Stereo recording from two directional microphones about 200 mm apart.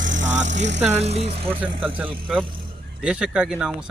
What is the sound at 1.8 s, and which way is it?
Speech, 10° right (ahead or behind).